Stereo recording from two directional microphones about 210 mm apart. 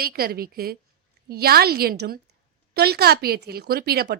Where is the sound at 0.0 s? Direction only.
45° right (ahead or behind).